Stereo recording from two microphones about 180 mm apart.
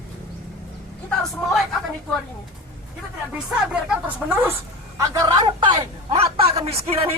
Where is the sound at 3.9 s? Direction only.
10° right (ahead or behind).